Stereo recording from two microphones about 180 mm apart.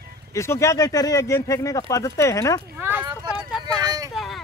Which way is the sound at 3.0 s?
25° right (ahead or behind).